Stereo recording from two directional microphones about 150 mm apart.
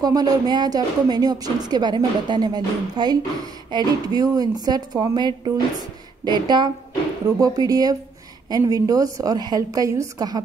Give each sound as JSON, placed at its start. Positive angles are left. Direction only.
{"t": 0.0, "sound": "a woman's voice", "side_deg": -25}